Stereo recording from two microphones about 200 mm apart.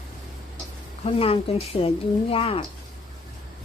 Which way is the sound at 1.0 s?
30° left (ahead or behind).